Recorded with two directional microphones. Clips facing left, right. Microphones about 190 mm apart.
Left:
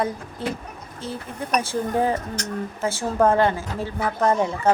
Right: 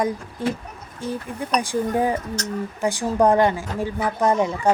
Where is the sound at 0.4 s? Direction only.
15° right (ahead or behind).